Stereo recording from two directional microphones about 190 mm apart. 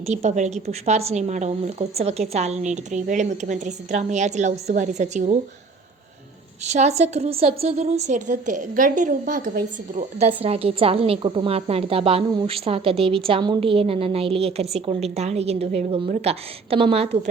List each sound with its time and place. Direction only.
0.0 s a woman's voice: 35° right (ahead or behind)
6.7 s a woman's voice: 35° right (ahead or behind)